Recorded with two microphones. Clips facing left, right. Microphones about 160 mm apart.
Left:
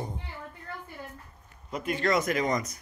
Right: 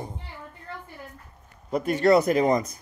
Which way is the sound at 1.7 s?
35° right (ahead or behind).